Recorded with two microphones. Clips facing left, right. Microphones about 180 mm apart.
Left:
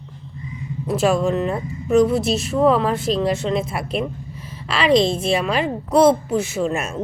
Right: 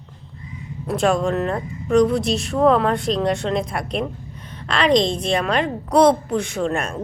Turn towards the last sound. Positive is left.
turn(degrees=5)  # may be behind; listen again after turning